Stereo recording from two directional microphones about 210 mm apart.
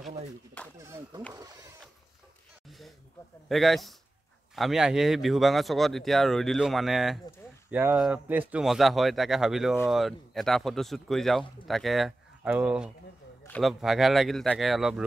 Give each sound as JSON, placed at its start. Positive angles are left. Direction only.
{"t": 0.7, "sound": "speech", "side_deg": -15}
{"t": 3.4, "sound": "speech", "side_deg": 0}